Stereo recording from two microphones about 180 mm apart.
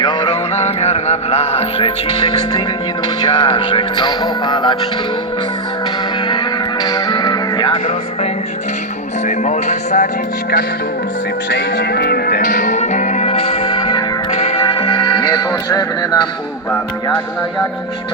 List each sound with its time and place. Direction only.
0.0 s music: 25° left (ahead or behind)
6.8 s music: 20° left (ahead or behind)
9.2 s music: 40° left (ahead or behind)
11.5 s music: 70° left (ahead or behind); by 16.2 s 20° left (ahead or behind)